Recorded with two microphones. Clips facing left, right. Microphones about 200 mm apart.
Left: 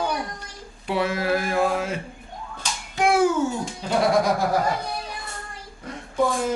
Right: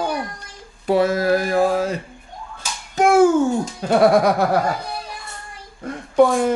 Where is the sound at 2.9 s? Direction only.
45° right (ahead or behind).